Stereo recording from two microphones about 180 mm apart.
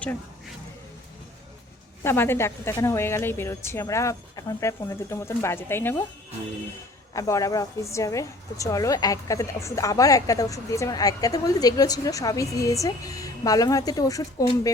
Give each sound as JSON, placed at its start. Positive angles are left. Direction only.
{"t": 2.0, "sound": "a woman's voice", "side_deg": 10}
{"t": 7.1, "sound": "a woman's voice", "side_deg": 20}